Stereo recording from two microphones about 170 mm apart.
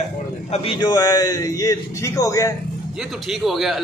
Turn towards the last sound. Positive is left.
turn(degrees=0)  # may be behind; listen again after turning